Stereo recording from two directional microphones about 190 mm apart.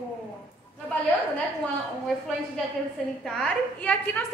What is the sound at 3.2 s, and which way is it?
A woman's voice, 5° left (ahead or behind).